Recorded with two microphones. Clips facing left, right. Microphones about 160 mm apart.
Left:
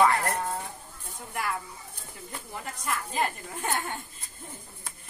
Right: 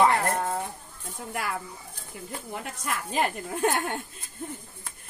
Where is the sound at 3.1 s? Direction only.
75° right (ahead or behind).